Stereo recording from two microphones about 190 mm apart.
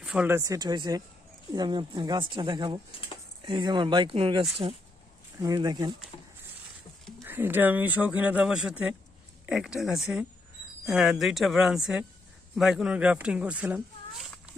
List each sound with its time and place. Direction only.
0.0 s speech: 5° right (ahead or behind); by 5.9 s 20° right (ahead or behind)
7.3 s speech: 10° right (ahead or behind)